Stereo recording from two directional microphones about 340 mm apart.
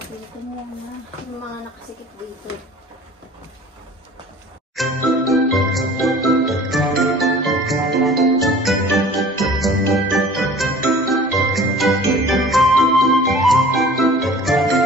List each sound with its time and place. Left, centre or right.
4.7 s jingle: centre